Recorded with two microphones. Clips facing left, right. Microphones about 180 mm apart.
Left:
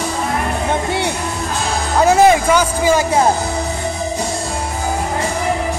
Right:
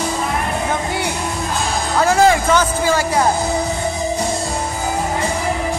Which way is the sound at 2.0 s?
20° left (ahead or behind).